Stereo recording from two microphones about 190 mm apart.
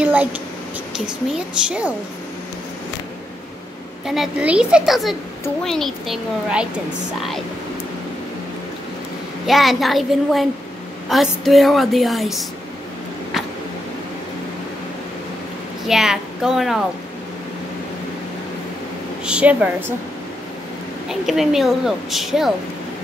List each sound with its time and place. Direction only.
0.0 s a sound: 10° right (ahead or behind)
1.7 s a woman's voice: 5° right (ahead or behind)
4.0 s a woman's voice: centre (ahead or behind)
9.5 s a woman's voice: centre (ahead or behind)
15.9 s a woman's voice: centre (ahead or behind)
19.2 s a woman's voice: 5° right (ahead or behind)
21.1 s a woman's voice: centre (ahead or behind)